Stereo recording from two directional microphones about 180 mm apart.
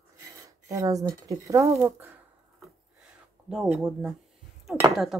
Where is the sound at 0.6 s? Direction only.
20° right (ahead or behind).